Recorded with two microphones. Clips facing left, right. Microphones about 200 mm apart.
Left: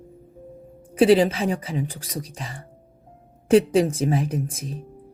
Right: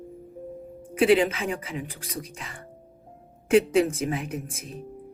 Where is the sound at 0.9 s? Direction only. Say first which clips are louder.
Left 4 dB; 35° left (ahead or behind).